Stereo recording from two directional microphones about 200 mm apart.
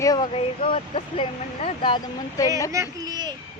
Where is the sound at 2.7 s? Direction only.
15° right (ahead or behind).